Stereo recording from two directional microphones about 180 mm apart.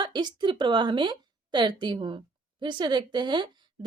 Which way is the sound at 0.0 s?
25° right (ahead or behind).